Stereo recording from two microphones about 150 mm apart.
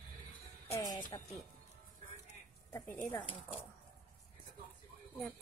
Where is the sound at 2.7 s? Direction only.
10° left (ahead or behind).